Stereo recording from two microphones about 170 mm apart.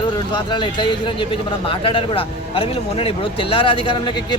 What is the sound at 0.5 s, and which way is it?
A man's voice, 30° left (ahead or behind).